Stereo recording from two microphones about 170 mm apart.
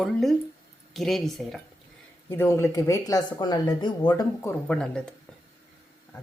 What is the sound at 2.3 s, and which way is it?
Speech, 15° left (ahead or behind).